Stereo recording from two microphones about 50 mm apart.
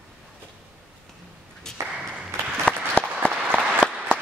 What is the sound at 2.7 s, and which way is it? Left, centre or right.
Applause, centre.